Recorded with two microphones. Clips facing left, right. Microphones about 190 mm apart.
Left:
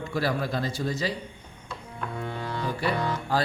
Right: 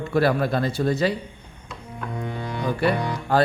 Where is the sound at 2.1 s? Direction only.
15° right (ahead or behind).